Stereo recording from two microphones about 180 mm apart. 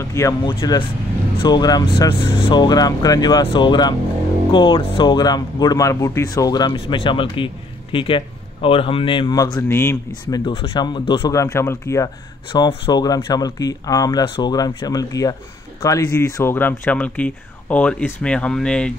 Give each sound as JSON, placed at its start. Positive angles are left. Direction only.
{"t": 0.0, "sound": "speech", "side_deg": 15}
{"t": 9.6, "sound": "speech", "side_deg": 15}
{"t": 10.4, "sound": "speech", "side_deg": 25}